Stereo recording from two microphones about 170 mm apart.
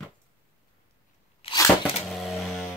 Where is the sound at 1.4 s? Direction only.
25° left (ahead or behind).